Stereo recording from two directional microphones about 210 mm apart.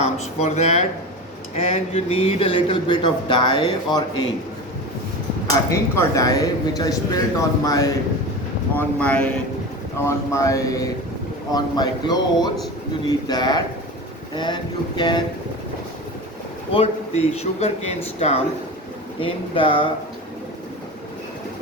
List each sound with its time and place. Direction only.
0.0 s a man's voice: 30° left (ahead or behind)
5.7 s a man's voice: 15° left (ahead or behind)
16.7 s a man's voice: 30° left (ahead or behind)